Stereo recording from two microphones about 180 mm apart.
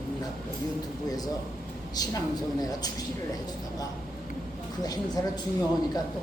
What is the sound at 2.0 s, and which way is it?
Speech, 20° left (ahead or behind).